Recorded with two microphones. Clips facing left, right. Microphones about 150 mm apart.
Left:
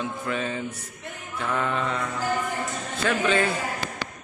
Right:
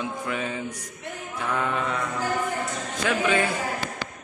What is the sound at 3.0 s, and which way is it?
Speech, 10° right (ahead or behind).